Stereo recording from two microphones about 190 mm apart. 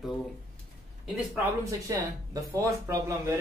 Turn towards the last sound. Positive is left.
turn(degrees=-15)  # may be behind; listen again after turning